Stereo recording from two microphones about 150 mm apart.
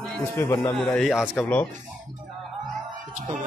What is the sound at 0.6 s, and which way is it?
A man's voice, 5° left (ahead or behind).